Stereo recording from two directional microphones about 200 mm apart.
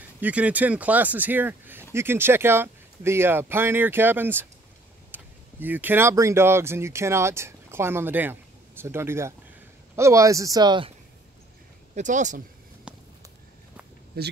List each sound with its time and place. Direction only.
0.2 s speech: 5° right (ahead or behind)
11.9 s speech: 40° right (ahead or behind)
12.9 s a sound: 5° right (ahead or behind)
14.2 s speech: 50° right (ahead or behind)